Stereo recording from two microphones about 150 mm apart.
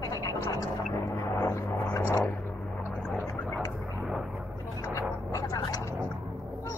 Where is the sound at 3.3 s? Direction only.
15° left (ahead or behind).